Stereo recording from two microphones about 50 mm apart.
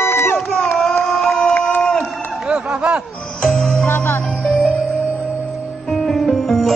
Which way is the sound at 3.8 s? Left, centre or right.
Left.